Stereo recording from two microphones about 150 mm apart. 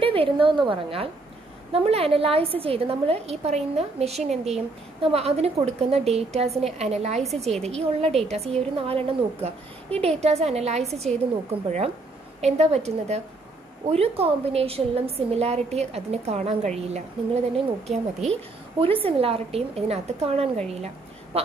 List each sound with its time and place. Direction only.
0.0 s a woman's voice: 35° right (ahead or behind)
12.4 s a woman's voice: 45° right (ahead or behind)